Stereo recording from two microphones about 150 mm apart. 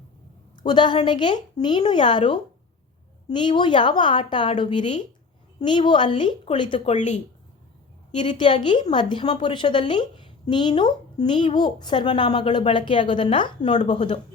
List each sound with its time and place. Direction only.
0.5 s a woman's voice: 30° left (ahead or behind)
6.7 s speech: 50° left (ahead or behind)
8.2 s a woman's voice: 30° left (ahead or behind)